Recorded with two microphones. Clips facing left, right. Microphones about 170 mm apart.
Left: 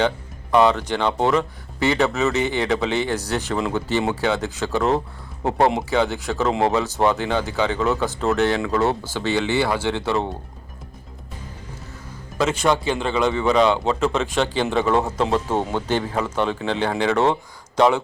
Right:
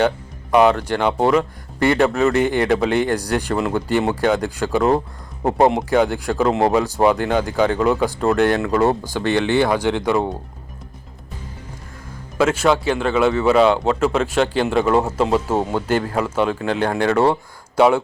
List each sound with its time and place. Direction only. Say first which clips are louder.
0.5 s speech: right 2 dB; 10° right (ahead or behind)
12.4 s speech: right 3 dB; 5° right (ahead or behind)